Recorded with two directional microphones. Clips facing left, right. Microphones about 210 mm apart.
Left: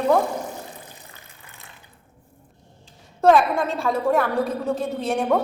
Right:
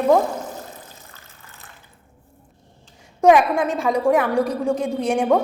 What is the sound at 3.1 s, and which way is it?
A woman's voice, 15° right (ahead or behind).